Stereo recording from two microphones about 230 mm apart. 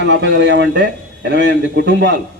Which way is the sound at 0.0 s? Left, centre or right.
Right.